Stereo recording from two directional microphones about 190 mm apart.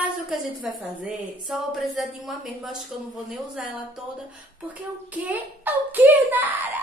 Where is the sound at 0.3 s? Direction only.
Centre (ahead or behind).